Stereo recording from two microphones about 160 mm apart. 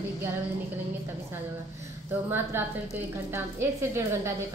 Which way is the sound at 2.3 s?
15° right (ahead or behind).